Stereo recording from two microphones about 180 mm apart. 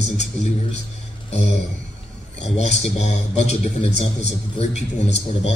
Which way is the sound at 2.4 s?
40° left (ahead or behind).